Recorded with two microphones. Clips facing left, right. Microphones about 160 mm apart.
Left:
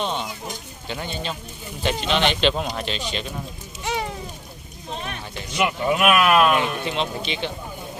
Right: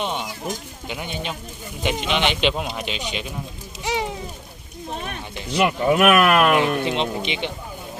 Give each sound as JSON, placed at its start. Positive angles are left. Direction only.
{"t": 0.0, "sound": "a sound", "side_deg": -10}
{"t": 0.9, "sound": "speech", "side_deg": -15}
{"t": 3.8, "sound": "a sound", "side_deg": -15}
{"t": 5.3, "sound": "speech", "side_deg": -30}
{"t": 5.6, "sound": "speech", "side_deg": -45}
{"t": 6.8, "sound": "speech", "side_deg": -20}